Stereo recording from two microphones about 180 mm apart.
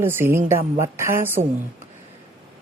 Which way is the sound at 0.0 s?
10° right (ahead or behind).